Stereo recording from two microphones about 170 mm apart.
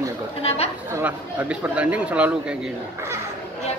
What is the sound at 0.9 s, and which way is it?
Speech, 10° right (ahead or behind).